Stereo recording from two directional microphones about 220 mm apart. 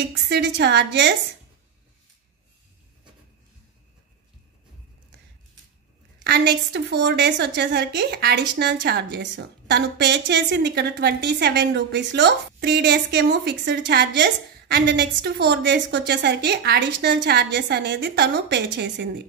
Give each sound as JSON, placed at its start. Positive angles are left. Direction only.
{"t": 0.1, "sound": "a woman's voice", "side_deg": -55}
{"t": 6.2, "sound": "a woman's voice", "side_deg": -50}